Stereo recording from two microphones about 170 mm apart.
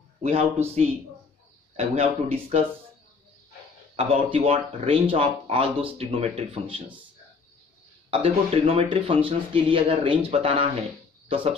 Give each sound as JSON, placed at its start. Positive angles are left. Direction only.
{"t": 0.2, "sound": "speech", "side_deg": -35}
{"t": 1.8, "sound": "speech", "side_deg": -35}
{"t": 3.9, "sound": "speech", "side_deg": -35}
{"t": 8.1, "sound": "speech", "side_deg": -35}